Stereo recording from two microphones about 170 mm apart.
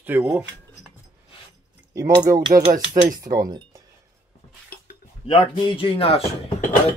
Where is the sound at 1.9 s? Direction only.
20° right (ahead or behind).